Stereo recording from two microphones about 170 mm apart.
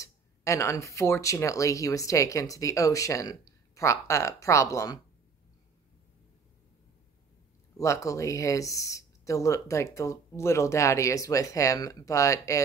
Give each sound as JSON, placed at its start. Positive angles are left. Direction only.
{"t": 0.0, "sound": "speech", "side_deg": 15}
{"t": 7.7, "sound": "speech", "side_deg": 20}